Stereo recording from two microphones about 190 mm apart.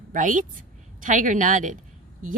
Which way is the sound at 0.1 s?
45° right (ahead or behind).